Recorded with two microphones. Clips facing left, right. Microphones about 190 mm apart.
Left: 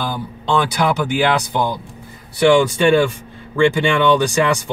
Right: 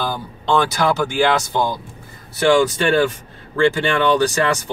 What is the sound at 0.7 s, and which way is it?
Speech, 15° left (ahead or behind).